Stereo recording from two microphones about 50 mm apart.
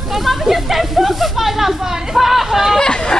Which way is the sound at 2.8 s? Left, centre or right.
Centre.